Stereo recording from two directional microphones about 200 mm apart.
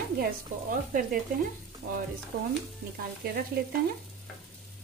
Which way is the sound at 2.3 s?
55° right (ahead or behind).